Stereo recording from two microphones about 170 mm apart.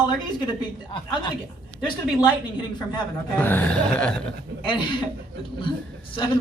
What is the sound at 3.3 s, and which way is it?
Chuckle, 10° left (ahead or behind).